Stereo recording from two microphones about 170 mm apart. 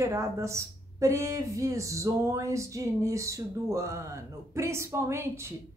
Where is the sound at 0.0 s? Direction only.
15° right (ahead or behind).